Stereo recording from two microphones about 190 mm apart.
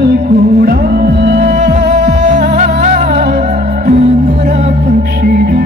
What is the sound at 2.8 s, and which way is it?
Music, 40° right (ahead or behind).